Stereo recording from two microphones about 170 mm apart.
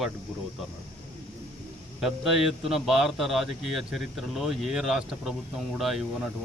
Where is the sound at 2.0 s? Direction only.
Centre (ahead or behind).